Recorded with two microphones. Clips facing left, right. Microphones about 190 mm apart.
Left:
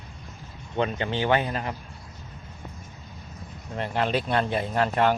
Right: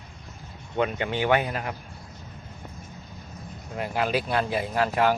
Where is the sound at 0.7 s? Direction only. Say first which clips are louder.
Even; 10° right (ahead or behind).